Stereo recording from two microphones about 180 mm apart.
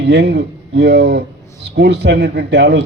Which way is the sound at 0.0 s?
70° right (ahead or behind).